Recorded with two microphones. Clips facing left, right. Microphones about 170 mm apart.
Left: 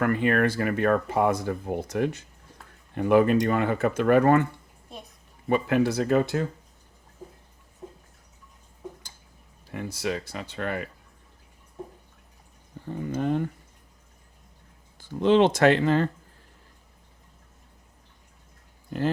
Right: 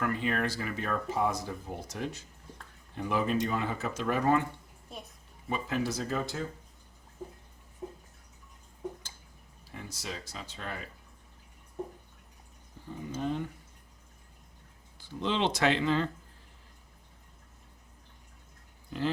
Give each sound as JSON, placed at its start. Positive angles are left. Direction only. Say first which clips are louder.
{"t": 0.0, "sound": "speech", "louder": "left 8 dB", "side_deg": 60}
{"t": 4.9, "sound": "a sound", "louder": "left 2 dB", "side_deg": 0}
{"t": 5.5, "sound": "speech", "louder": "left 9 dB", "side_deg": 65}
{"t": 9.7, "sound": "speech", "louder": "left 11 dB", "side_deg": 65}
{"t": 12.8, "sound": "a sound", "louder": "left 9 dB", "side_deg": 60}
{"t": 13.1, "sound": "speech", "louder": "left 7 dB", "side_deg": 55}
{"t": 14.9, "sound": "speech", "louder": "left 12 dB", "side_deg": 50}